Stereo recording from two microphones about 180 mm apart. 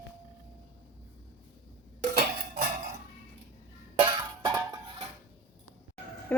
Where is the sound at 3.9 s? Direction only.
25° right (ahead or behind).